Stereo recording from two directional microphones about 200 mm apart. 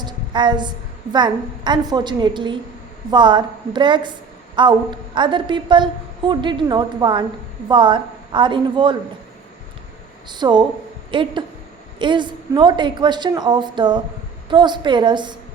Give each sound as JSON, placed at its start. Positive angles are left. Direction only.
{"t": 0.0, "sound": "a sound", "side_deg": -20}
{"t": 1.1, "sound": "a woman's voice", "side_deg": -20}
{"t": 10.2, "sound": "a woman's voice", "side_deg": -20}